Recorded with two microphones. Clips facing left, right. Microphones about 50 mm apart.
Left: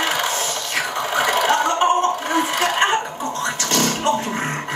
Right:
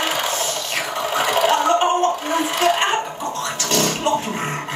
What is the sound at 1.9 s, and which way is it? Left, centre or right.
Gargling, left.